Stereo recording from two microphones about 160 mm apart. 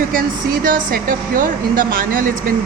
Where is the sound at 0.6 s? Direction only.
60° right (ahead or behind).